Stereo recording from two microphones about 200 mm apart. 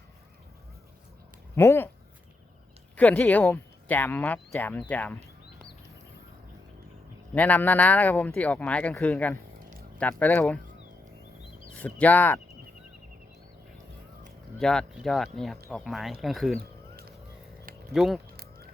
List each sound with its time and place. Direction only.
1.5 s speech: 10° left (ahead or behind)
2.9 s speech: 5° left (ahead or behind)
7.3 s speech: 10° left (ahead or behind)
11.8 s speech: 5° left (ahead or behind)
14.6 s speech: 5° left (ahead or behind)
17.9 s speech: centre (ahead or behind)
18.3 s a sound: 50° right (ahead or behind)